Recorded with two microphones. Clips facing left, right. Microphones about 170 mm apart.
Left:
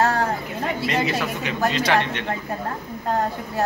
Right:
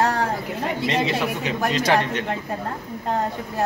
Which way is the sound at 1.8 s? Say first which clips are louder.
Right 1 dB; 40° right (ahead or behind).